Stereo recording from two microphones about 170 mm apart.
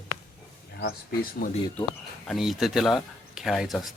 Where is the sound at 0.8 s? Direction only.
70° left (ahead or behind).